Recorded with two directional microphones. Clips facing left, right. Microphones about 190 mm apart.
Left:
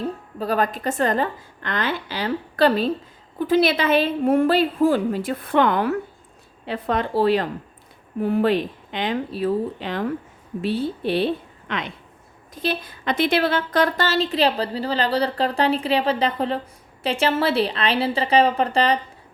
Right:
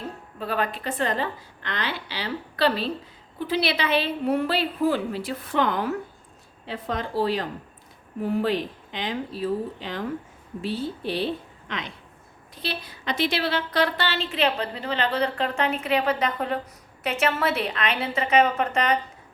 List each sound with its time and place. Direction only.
0.3 s a woman's voice: 40° left (ahead or behind); by 11.8 s 60° left (ahead or behind)
12.5 s a woman's voice: 50° left (ahead or behind); by 18.9 s 30° left (ahead or behind)